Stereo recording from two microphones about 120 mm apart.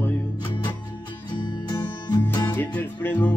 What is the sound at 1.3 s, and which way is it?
Music, 40° left (ahead or behind).